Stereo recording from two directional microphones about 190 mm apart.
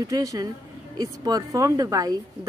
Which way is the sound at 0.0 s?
20° right (ahead or behind).